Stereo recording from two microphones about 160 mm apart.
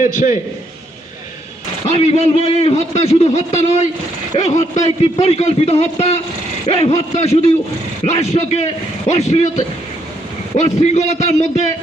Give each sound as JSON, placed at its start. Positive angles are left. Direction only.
{"t": 0.0, "sound": "a man's voice", "side_deg": 50}
{"t": 1.9, "sound": "a man's voice", "side_deg": 40}